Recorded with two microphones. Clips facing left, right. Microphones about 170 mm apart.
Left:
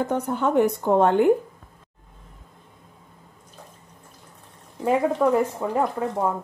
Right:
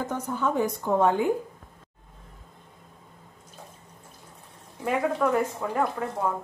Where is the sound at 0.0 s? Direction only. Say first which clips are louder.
Left 5 dB; 65° left (ahead or behind).